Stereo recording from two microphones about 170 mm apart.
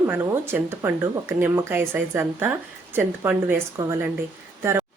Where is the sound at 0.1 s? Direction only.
15° right (ahead or behind).